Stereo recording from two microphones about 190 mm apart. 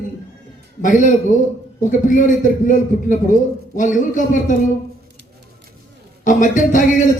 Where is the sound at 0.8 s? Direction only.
40° left (ahead or behind).